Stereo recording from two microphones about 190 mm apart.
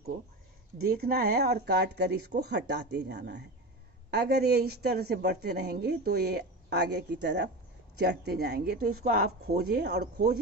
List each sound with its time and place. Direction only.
0.7 s a woman's voice: 55° right (ahead or behind)